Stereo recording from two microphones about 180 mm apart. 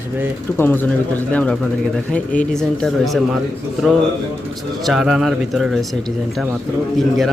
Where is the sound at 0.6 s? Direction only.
10° left (ahead or behind).